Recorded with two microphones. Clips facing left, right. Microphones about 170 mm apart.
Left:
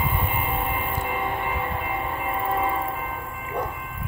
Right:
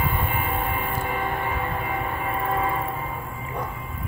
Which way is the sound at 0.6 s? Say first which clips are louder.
Even; 15° left (ahead or behind).